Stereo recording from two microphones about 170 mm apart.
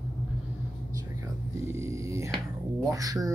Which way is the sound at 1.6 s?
15° right (ahead or behind).